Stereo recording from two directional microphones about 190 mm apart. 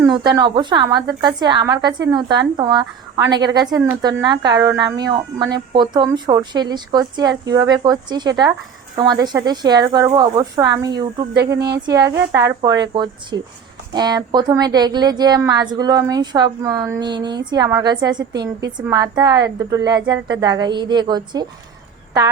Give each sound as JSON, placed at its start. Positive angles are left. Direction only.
{"t": 0.1, "sound": "a woman's voice", "side_deg": -20}
{"t": 11.5, "sound": "speech", "side_deg": -60}
{"t": 11.9, "sound": "a woman's voice", "side_deg": -20}